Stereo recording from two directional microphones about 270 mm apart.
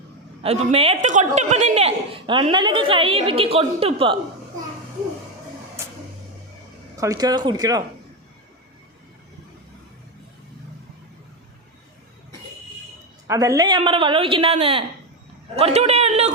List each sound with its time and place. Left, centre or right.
0.4 s a woman's voice: right
6.9 s speech: centre
13.2 s a woman's voice: centre